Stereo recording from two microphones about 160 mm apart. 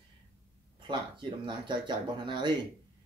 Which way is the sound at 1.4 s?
30° right (ahead or behind).